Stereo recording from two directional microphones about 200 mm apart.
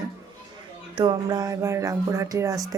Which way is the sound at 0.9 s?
20° right (ahead or behind).